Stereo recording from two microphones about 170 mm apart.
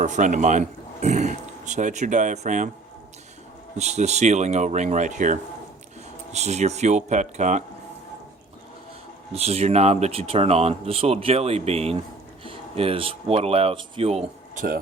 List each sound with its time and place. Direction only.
0.0 s speech: 45° right (ahead or behind)
3.8 s speech: 40° right (ahead or behind)
9.3 s speech: 35° right (ahead or behind)